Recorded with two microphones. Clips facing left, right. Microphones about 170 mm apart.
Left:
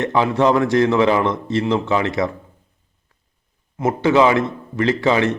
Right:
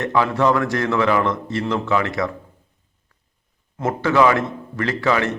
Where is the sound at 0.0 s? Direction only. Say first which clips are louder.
Left 2 dB; 20° left (ahead or behind).